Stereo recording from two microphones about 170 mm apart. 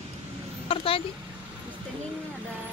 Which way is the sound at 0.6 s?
35° left (ahead or behind).